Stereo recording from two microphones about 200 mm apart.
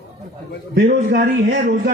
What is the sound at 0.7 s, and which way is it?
A man's voice, 50° right (ahead or behind).